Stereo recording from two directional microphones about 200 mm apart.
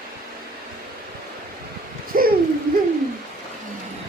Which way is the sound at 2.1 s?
45° right (ahead or behind).